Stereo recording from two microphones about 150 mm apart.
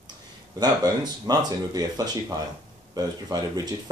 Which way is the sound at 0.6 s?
25° right (ahead or behind).